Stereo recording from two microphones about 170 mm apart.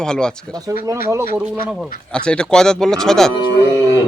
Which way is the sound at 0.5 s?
20° right (ahead or behind).